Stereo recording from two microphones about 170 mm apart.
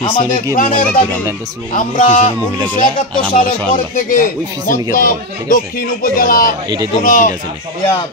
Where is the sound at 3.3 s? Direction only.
55° left (ahead or behind).